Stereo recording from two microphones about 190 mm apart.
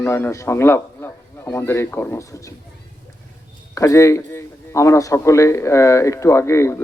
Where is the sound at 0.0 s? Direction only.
10° left (ahead or behind).